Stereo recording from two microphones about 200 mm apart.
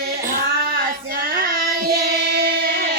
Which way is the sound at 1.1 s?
50° right (ahead or behind).